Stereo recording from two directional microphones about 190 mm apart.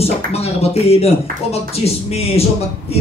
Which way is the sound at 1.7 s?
35° left (ahead or behind).